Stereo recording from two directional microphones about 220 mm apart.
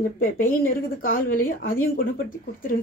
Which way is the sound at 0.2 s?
40° left (ahead or behind).